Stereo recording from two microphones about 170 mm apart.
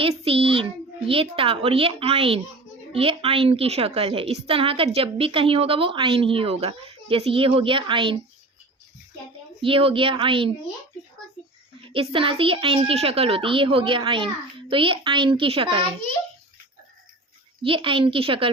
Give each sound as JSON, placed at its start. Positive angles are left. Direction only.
{"t": 0.0, "sound": "a child's voice", "side_deg": -35}
{"t": 9.6, "sound": "a woman's voice", "side_deg": -30}
{"t": 11.9, "sound": "a woman's voice", "side_deg": -30}
{"t": 17.6, "sound": "a woman's voice", "side_deg": -30}